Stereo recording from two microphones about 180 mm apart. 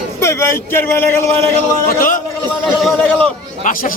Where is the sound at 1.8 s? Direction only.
50° left (ahead or behind).